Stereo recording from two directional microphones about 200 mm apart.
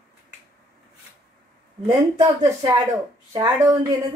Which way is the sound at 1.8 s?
20° right (ahead or behind).